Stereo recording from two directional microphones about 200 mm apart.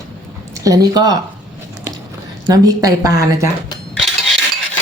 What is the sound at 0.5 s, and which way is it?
Speech, 15° right (ahead or behind).